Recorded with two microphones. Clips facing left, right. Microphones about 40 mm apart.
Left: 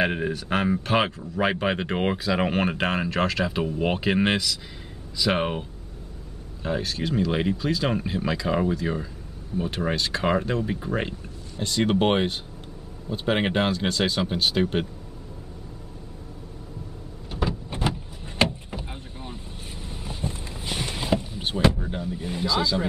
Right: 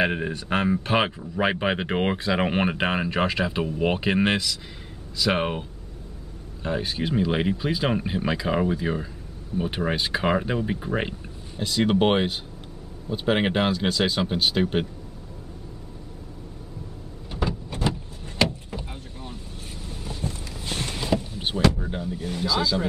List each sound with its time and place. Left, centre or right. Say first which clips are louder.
0.0 s speech: even; centre
6.8 s speech: right 2 dB; centre
17.3 s power windows: even; centre
17.6 s vehicle: right 1 dB; left
19.9 s vehicle: even; centre
21.7 s vehicle: even; centre
22.2 s speech: even; centre